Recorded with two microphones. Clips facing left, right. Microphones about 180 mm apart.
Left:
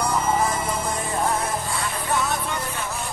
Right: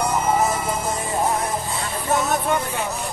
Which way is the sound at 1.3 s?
Centre (ahead or behind).